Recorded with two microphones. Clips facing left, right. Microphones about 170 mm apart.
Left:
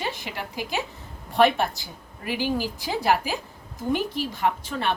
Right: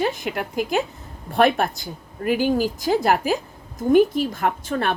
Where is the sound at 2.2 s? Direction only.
50° right (ahead or behind).